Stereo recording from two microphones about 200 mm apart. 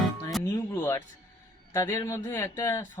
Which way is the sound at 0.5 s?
15° left (ahead or behind).